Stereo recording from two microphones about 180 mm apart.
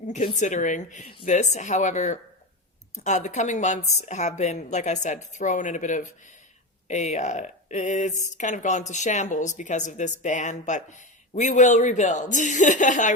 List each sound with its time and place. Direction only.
0.3 s a woman's voice: 45° left (ahead or behind)